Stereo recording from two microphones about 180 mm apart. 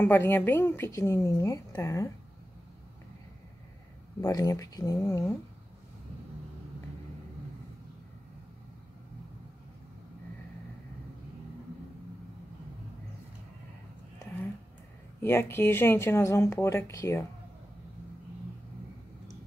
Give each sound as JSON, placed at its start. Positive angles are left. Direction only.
{"t": 0.0, "sound": "a woman's voice", "side_deg": 10}
{"t": 4.2, "sound": "speech", "side_deg": 20}
{"t": 15.2, "sound": "a woman's voice", "side_deg": 15}